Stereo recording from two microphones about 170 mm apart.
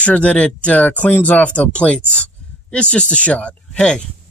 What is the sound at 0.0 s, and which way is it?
Speech, 10° left (ahead or behind).